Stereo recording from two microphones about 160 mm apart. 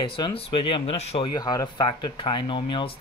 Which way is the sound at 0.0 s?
35° left (ahead or behind).